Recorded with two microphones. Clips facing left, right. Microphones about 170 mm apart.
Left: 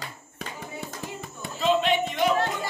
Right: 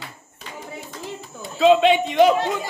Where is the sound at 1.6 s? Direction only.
85° right.